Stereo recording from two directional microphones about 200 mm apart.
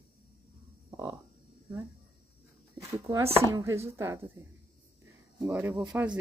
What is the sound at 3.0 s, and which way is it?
A woman's voice, 15° right (ahead or behind).